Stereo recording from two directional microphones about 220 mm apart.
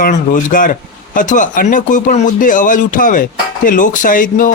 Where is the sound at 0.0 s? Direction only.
35° left (ahead or behind).